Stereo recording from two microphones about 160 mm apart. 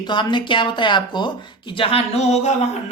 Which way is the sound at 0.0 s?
30° left (ahead or behind).